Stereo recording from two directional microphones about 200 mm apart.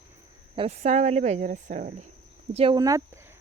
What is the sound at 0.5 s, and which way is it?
Speech, 30° right (ahead or behind).